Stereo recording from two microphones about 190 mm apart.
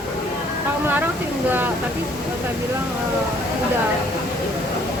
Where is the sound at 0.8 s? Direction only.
10° right (ahead or behind).